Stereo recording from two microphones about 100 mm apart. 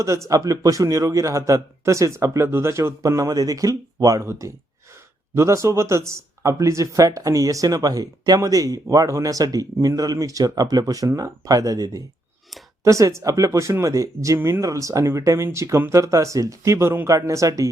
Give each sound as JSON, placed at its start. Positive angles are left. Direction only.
{"t": 0.0, "sound": "a man's voice", "side_deg": -30}
{"t": 14.3, "sound": "speech", "side_deg": -20}
{"t": 14.6, "sound": "a man's voice", "side_deg": -35}